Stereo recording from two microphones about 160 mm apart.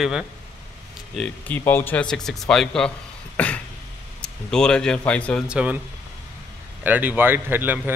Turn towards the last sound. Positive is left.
turn(degrees=-15)  # may be behind; listen again after turning